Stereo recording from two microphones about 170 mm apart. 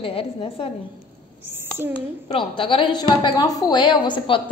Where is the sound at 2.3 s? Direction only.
30° left (ahead or behind).